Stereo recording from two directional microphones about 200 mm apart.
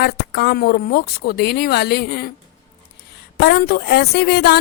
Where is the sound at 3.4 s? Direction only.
55° left (ahead or behind).